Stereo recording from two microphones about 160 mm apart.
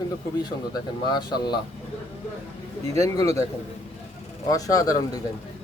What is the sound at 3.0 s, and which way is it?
Speech, 20° left (ahead or behind).